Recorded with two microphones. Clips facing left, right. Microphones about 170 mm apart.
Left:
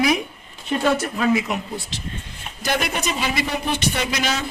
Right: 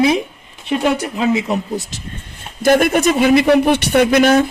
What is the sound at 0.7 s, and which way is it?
Speech, 20° right (ahead or behind).